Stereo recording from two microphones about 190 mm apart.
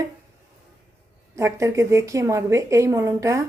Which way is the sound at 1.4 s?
15° right (ahead or behind).